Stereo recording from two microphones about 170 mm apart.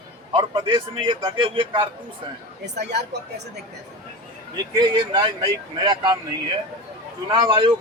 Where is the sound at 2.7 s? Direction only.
80° right.